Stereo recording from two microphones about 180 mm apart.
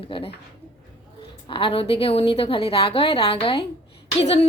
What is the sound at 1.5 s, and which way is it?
A woman's voice, 30° left (ahead or behind).